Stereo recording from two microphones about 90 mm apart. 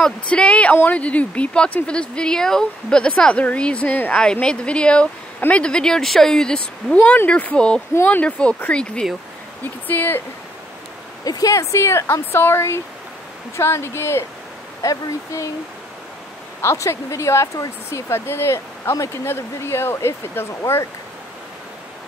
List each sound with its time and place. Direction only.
0.0 s a woman's voice: 10° left (ahead or behind)
7.9 s a woman's voice: 20° left (ahead or behind)
11.2 s speech: 40° left (ahead or behind)
16.6 s speech: 30° left (ahead or behind)